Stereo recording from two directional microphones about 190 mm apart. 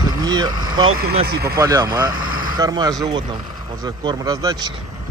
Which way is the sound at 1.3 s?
55° right (ahead or behind).